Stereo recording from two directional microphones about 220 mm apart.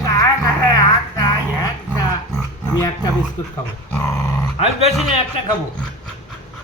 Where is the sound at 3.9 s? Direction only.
10° left (ahead or behind).